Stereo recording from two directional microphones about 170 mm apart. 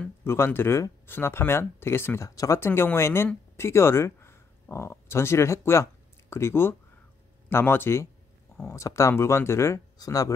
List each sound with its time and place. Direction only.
0.0 s speech: 15° left (ahead or behind)